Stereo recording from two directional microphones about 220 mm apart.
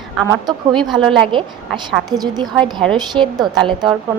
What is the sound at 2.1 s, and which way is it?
A woman's voice, 20° right (ahead or behind).